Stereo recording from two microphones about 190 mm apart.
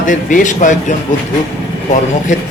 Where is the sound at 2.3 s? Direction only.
40° left (ahead or behind).